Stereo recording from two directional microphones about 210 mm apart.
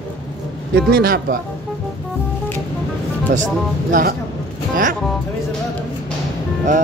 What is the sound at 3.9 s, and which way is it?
Speech, 45° right (ahead or behind).